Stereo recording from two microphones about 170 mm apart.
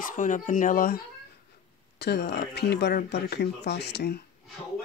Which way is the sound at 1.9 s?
75° left (ahead or behind).